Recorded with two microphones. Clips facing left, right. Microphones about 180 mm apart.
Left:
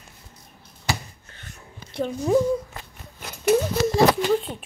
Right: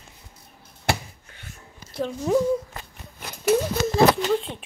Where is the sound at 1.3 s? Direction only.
5° right (ahead or behind).